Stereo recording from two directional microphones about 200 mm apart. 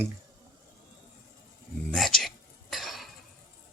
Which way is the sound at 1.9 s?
Centre (ahead or behind).